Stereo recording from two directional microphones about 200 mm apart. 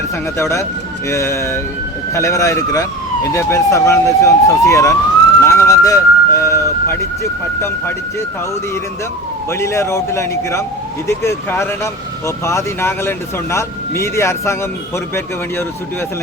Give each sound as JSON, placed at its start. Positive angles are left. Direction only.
{"t": 0.3, "sound": "speech", "side_deg": 15}
{"t": 5.4, "sound": "a sound", "side_deg": 15}
{"t": 9.5, "sound": "speech", "side_deg": 15}